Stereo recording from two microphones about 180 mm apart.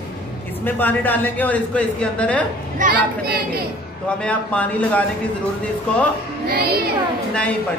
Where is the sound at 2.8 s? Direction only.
45° right (ahead or behind).